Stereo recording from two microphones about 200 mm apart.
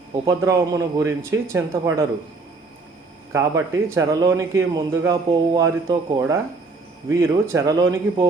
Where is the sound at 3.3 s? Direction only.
15° right (ahead or behind).